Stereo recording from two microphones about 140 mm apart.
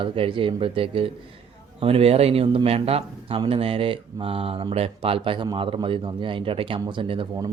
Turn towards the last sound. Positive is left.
turn(degrees=-35)  # may be behind; listen again after turning